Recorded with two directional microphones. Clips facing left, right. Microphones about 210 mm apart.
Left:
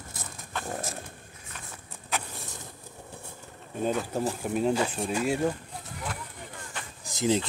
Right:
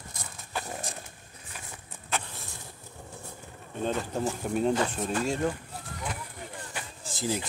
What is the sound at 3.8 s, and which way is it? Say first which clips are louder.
Speech: left 2 dB; 5° left (ahead or behind).